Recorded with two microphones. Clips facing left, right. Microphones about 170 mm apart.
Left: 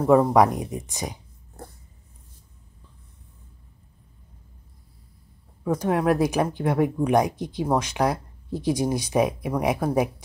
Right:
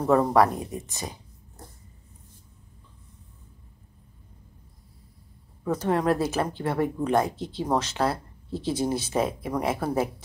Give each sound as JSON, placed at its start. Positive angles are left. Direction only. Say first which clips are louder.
{"t": 0.0, "sound": "speech", "louder": "left 3 dB", "side_deg": 10}
{"t": 1.6, "sound": "dog", "louder": "left 6 dB", "side_deg": 55}
{"t": 5.6, "sound": "speech", "louder": "left 2 dB", "side_deg": 10}